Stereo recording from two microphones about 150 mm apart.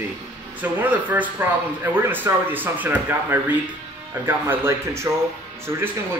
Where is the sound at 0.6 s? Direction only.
10° right (ahead or behind).